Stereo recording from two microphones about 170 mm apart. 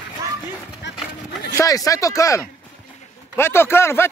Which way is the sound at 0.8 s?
90° left.